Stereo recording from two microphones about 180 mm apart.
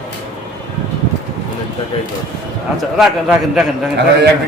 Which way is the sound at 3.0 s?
Centre (ahead or behind).